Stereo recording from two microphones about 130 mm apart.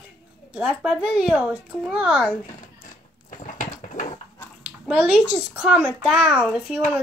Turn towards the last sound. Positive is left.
turn(degrees=-5)  # may be behind; listen again after turning